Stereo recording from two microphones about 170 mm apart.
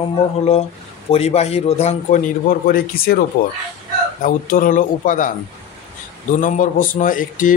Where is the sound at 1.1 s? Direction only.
40° left (ahead or behind); by 3.2 s 60° left (ahead or behind).